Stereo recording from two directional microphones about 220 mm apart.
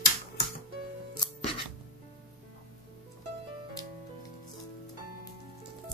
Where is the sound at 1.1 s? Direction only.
20° left (ahead or behind).